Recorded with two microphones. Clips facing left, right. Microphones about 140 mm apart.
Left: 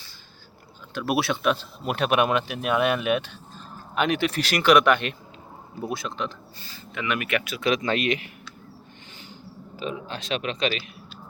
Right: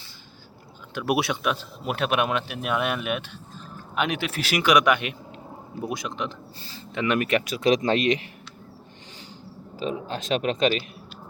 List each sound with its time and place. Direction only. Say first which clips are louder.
0.9 s speech: even; 15° right (ahead or behind)
6.6 s speech: right 5 dB; 30° right (ahead or behind)
9.7 s speech: right 3 dB; 35° right (ahead or behind)